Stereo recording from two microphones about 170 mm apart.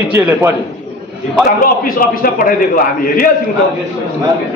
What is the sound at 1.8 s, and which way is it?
Speech, 55° left (ahead or behind).